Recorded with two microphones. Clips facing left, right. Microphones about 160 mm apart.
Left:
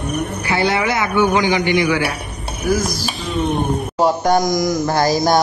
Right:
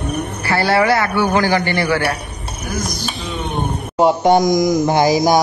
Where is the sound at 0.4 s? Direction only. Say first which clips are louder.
Right 4 dB; 20° left (ahead or behind).